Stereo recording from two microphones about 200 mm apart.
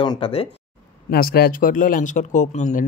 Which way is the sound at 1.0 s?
50° left (ahead or behind).